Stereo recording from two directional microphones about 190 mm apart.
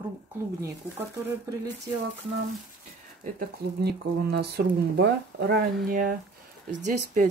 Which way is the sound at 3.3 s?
60° right (ahead or behind).